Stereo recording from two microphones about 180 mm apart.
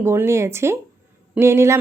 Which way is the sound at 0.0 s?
15° right (ahead or behind).